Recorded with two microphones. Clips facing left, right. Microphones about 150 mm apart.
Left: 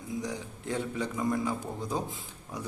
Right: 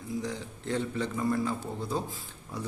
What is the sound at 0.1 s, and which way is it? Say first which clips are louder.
A man's voice: right 1 dB; 15° left (ahead or behind).